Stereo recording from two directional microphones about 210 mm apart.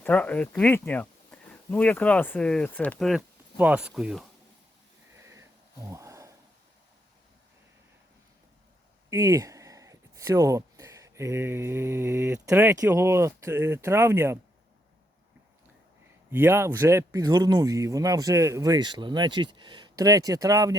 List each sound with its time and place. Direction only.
0.0 s speech: 5° left (ahead or behind)
5.1 s sniff: 15° right (ahead or behind)
5.9 s a sound: 15° right (ahead or behind)
9.0 s speech: 15° right (ahead or behind)
16.3 s speech: 10° right (ahead or behind)